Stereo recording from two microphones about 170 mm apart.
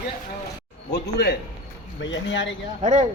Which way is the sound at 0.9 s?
80° left.